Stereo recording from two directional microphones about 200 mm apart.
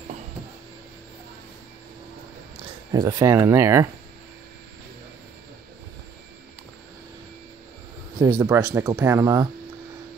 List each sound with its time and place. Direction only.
2.6 s speech: 20° right (ahead or behind)
8.2 s speech: 15° right (ahead or behind)